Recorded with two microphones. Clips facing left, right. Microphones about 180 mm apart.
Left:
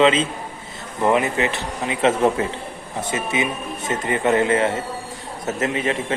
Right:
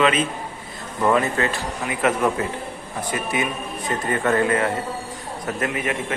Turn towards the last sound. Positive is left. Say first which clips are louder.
# left 3 dB
turn(degrees=25)  # may be behind; listen again after turning